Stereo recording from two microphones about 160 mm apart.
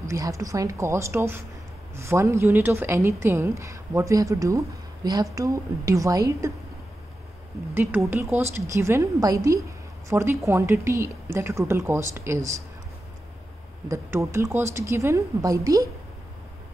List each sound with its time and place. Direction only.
0.1 s a woman's voice: 20° right (ahead or behind)
7.7 s speech: 15° right (ahead or behind)
13.8 s speech: 20° right (ahead or behind)